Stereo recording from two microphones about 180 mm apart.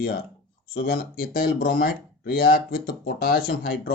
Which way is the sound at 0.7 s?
55° left (ahead or behind).